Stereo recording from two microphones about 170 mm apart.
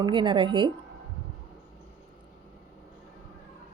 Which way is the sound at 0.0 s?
30° right (ahead or behind).